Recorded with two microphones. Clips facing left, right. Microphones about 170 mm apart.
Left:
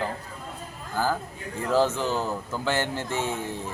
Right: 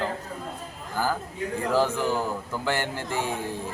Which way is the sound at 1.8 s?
10° right (ahead or behind).